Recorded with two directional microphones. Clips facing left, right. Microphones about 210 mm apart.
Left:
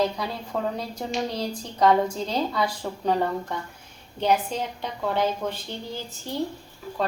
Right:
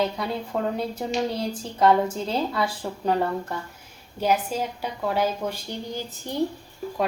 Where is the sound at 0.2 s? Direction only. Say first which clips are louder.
Right 2 dB; centre (ahead or behind).